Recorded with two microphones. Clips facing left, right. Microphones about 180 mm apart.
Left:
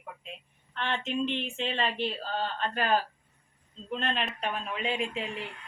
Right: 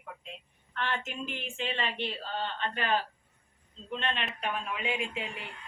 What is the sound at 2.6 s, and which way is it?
Speech, 40° left (ahead or behind).